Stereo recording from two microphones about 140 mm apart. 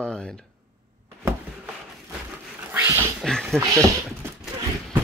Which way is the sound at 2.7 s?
15° right (ahead or behind).